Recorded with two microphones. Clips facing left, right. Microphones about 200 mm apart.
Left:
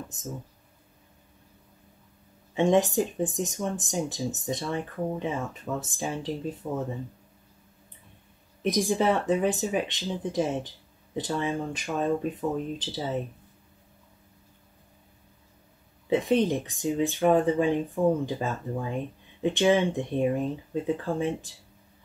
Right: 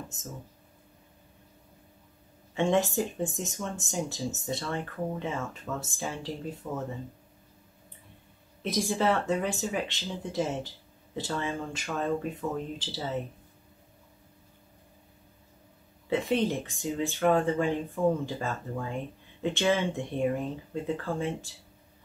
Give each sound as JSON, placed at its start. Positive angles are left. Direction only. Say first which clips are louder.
{"t": 2.5, "sound": "speech", "louder": "left 4 dB", "side_deg": 15}
{"t": 8.6, "sound": "speech", "louder": "left 3 dB", "side_deg": 15}
{"t": 16.1, "sound": "speech", "louder": "left 4 dB", "side_deg": 15}